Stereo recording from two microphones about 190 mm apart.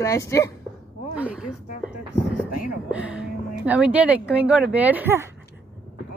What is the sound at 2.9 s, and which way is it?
Speech, 5° right (ahead or behind).